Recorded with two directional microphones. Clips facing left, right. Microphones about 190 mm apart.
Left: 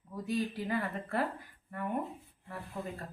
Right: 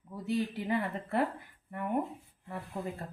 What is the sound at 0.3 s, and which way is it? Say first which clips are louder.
Speech: right 2 dB; 20° right (ahead or behind).